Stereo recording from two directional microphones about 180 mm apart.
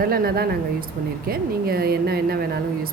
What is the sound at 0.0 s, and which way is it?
Speech, 55° right (ahead or behind).